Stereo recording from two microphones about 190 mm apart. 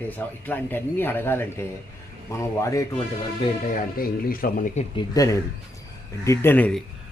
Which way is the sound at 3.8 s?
50° left (ahead or behind).